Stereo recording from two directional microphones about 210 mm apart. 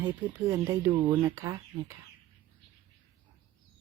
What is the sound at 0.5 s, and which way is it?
Speech, 15° right (ahead or behind).